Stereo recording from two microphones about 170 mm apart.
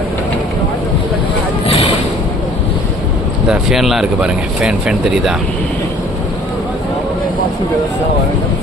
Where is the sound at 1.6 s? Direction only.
35° left (ahead or behind).